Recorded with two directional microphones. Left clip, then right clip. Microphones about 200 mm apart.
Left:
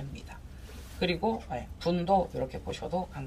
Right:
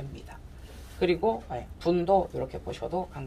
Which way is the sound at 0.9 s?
30° right (ahead or behind).